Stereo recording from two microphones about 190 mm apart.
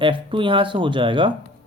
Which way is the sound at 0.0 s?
25° right (ahead or behind).